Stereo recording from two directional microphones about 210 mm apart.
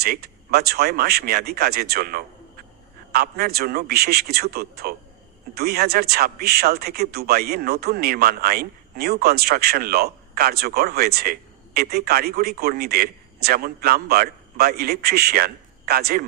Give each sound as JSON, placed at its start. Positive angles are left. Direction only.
{"t": 0.0, "sound": "speech", "side_deg": -50}